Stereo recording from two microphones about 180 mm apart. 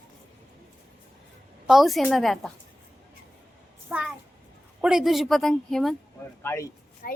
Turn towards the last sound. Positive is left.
turn(degrees=50)  # may be behind; listen again after turning